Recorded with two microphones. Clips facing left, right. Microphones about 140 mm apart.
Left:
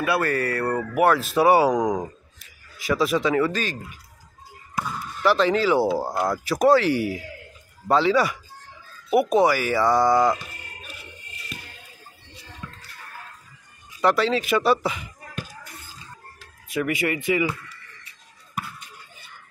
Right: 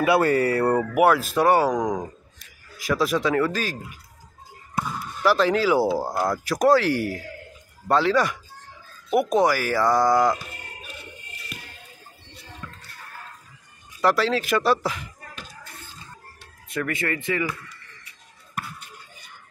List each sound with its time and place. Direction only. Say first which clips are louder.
0.0 s speech: right 4 dB; 20° right (ahead or behind)
0.9 s speech: left 2 dB; 5° right (ahead or behind); by 2.0 s 10° left (ahead or behind)
2.8 s speech: left 1 dB; centre (ahead or behind)
5.2 s speech: even; centre (ahead or behind)
9.1 s a sound: left 1 dB; 5° left (ahead or behind)
12.6 s a sound: left 1 dB; 5° left (ahead or behind)
14.0 s speech: left 1 dB; centre (ahead or behind)
16.6 s speech: left 3 dB; 10° left (ahead or behind)